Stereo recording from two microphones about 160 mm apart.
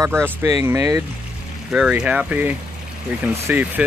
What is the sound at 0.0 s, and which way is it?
Speech, 15° right (ahead or behind).